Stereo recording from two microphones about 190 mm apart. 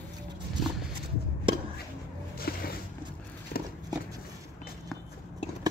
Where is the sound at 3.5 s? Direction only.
50° left (ahead or behind).